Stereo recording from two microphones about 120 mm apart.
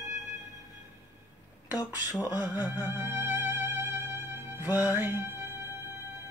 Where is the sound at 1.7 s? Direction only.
30° left (ahead or behind).